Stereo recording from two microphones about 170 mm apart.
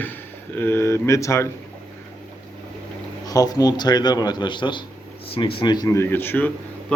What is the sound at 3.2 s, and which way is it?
A man's voice, 20° left (ahead or behind).